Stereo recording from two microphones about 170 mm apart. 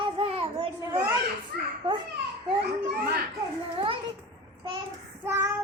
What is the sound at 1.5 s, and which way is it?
Children playing, 75° right (ahead or behind).